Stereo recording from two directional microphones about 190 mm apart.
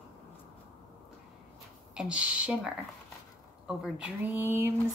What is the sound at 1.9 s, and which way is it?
Speech, 5° right (ahead or behind).